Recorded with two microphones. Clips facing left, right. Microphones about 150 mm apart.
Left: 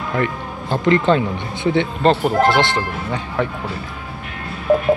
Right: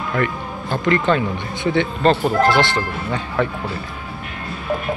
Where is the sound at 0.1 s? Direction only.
25° left (ahead or behind).